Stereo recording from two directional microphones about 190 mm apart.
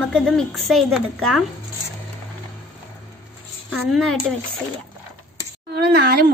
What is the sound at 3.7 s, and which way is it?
Speech, centre (ahead or behind).